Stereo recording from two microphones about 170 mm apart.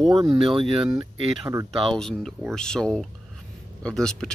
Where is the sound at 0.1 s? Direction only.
20° right (ahead or behind).